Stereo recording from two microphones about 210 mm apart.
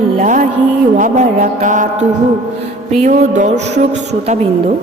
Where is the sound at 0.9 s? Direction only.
35° right (ahead or behind).